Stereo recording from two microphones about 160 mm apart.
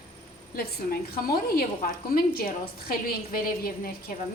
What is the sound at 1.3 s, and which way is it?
A woman's voice, 70° left (ahead or behind).